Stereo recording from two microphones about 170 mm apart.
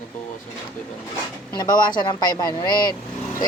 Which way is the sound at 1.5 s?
25° left (ahead or behind).